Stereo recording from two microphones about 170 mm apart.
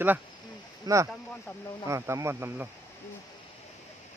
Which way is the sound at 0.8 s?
20° right (ahead or behind).